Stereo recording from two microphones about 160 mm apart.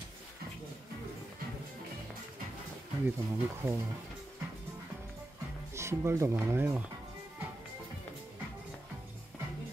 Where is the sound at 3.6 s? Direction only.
10° right (ahead or behind).